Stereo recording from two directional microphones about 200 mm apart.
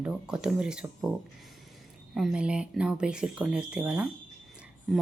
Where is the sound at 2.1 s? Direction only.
5° right (ahead or behind).